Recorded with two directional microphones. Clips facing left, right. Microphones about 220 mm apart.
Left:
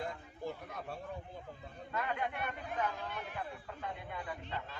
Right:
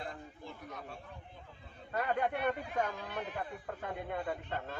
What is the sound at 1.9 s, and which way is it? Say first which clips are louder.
Speech: right 5 dB; 45° right (ahead or behind).